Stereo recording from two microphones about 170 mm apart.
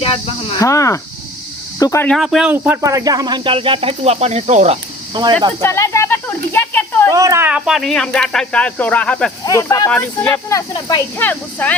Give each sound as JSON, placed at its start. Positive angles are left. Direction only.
{"t": 0.0, "sound": "speech", "side_deg": 35}
{"t": 0.6, "sound": "speech", "side_deg": 20}
{"t": 2.0, "sound": "speech", "side_deg": 0}
{"t": 2.8, "sound": "speech", "side_deg": -20}
{"t": 5.2, "sound": "speech", "side_deg": -25}
{"t": 5.6, "sound": "speech", "side_deg": 15}
{"t": 7.1, "sound": "speech", "side_deg": -20}
{"t": 9.4, "sound": "speech", "side_deg": 20}
{"t": 10.5, "sound": "speech", "side_deg": 25}
{"t": 11.2, "sound": "speech", "side_deg": 10}